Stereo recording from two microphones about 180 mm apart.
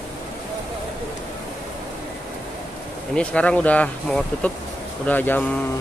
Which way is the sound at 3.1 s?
5° left (ahead or behind).